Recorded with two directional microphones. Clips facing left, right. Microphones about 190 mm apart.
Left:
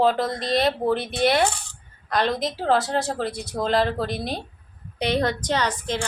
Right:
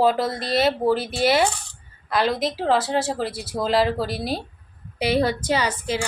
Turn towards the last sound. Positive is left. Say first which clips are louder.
# right 1 dB
turn(degrees=-10)  # may be behind; listen again after turning